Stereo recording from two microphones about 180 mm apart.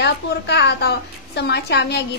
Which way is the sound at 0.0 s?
70° left (ahead or behind).